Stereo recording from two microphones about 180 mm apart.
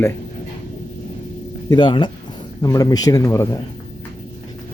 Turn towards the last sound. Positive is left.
turn(degrees=15)  # may be behind; listen again after turning